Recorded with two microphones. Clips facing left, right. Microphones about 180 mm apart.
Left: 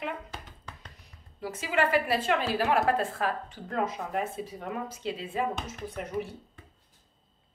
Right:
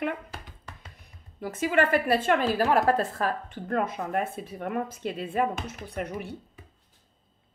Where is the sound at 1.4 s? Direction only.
50° right (ahead or behind).